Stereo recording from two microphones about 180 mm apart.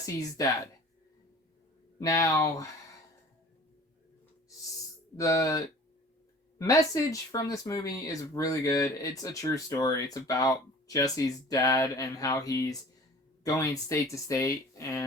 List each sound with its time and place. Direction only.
0.0 s speech: 20° left (ahead or behind)
2.0 s speech: 20° left (ahead or behind)
5.1 s speech: 20° left (ahead or behind)